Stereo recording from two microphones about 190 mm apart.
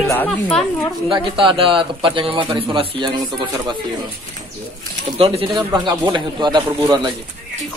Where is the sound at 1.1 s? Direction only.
25° right (ahead or behind).